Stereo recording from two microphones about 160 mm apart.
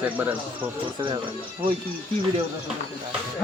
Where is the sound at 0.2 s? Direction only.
10° right (ahead or behind).